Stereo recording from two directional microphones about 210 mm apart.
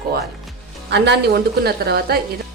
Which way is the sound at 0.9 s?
55° right (ahead or behind).